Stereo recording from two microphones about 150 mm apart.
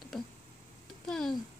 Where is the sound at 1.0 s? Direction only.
5° left (ahead or behind).